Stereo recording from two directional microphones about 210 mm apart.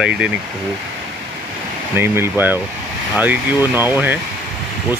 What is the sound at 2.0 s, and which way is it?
Speech, 10° right (ahead or behind).